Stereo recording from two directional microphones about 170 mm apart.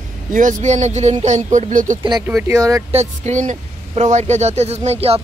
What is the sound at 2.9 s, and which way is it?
Speech, 40° right (ahead or behind).